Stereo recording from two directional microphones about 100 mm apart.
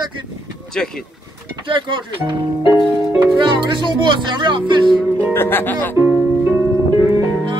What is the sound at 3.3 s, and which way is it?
Speech, 55° right (ahead or behind).